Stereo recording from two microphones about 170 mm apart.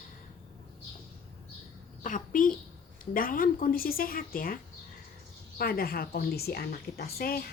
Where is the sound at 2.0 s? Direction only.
50° left (ahead or behind).